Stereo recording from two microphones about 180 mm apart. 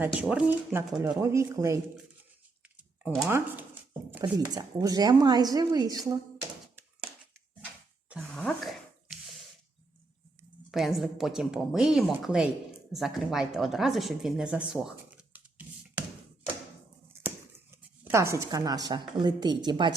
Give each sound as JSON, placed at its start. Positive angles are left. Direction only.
{"t": 0.1, "sound": "speech", "side_deg": -5}
{"t": 3.0, "sound": "speech", "side_deg": -10}
{"t": 4.2, "sound": "speech", "side_deg": -20}
{"t": 8.3, "sound": "a sound", "side_deg": 0}
{"t": 10.7, "sound": "a woman's voice", "side_deg": 0}
{"t": 15.3, "sound": "a sound", "side_deg": -10}
{"t": 18.0, "sound": "speech", "side_deg": -15}